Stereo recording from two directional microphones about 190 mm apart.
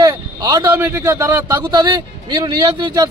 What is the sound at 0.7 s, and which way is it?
A man's voice, 15° right (ahead or behind).